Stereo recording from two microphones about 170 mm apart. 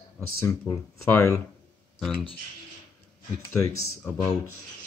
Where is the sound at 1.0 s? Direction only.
10° left (ahead or behind).